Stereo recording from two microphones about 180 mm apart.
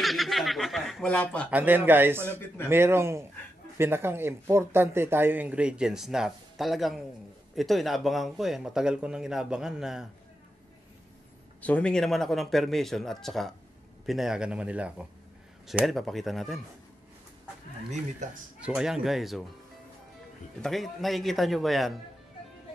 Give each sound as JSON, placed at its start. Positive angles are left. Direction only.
{"t": 0.0, "sound": "speech", "side_deg": 0}
{"t": 1.5, "sound": "speech", "side_deg": -10}
{"t": 11.6, "sound": "speech", "side_deg": 5}
{"t": 18.2, "sound": "speech", "side_deg": -40}
{"t": 18.6, "sound": "speech", "side_deg": -5}
{"t": 20.6, "sound": "speech", "side_deg": 0}